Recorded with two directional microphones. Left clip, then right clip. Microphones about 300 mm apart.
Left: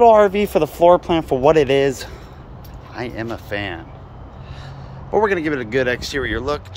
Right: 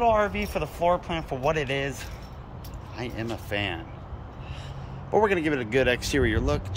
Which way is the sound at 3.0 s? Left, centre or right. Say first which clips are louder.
Left 7 dB; centre.